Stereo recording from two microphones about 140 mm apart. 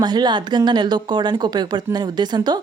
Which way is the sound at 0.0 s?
30° right (ahead or behind).